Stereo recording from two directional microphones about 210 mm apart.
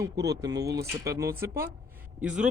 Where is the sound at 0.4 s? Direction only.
15° right (ahead or behind).